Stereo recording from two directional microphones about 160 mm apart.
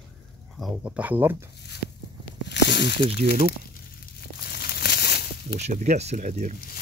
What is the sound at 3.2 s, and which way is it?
Speech, 45° right (ahead or behind).